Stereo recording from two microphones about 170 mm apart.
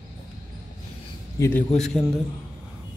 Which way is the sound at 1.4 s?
10° left (ahead or behind).